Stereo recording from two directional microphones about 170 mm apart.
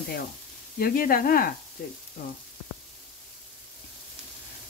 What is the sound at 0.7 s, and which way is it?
Stir, 60° left (ahead or behind).